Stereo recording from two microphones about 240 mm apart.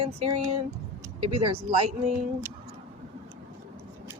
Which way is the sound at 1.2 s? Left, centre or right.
Right.